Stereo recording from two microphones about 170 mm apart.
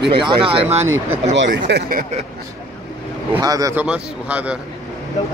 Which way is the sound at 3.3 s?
20° right (ahead or behind).